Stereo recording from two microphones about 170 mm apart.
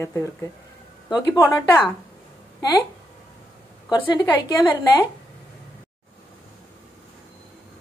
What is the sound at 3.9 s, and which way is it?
Speech, 25° left (ahead or behind).